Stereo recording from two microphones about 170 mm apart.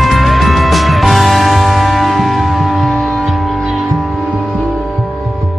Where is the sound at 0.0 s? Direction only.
Centre (ahead or behind).